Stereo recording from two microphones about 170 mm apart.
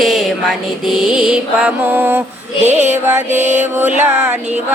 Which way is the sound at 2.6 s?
40° right (ahead or behind).